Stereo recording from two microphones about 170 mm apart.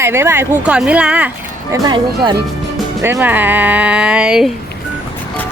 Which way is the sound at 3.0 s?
10° right (ahead or behind).